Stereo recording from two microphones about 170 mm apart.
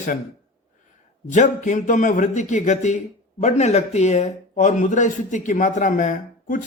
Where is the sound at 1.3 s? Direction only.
45° left (ahead or behind).